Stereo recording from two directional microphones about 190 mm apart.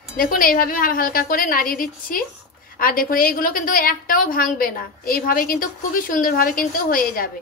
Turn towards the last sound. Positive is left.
turn(degrees=50)  # may be behind; listen again after turning